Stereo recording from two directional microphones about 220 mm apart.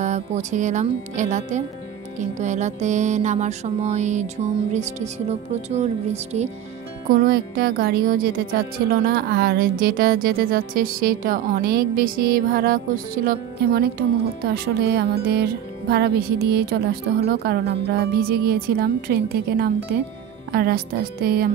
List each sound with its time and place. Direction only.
0.0 s music: 30° right (ahead or behind)
7.1 s speech: 40° right (ahead or behind)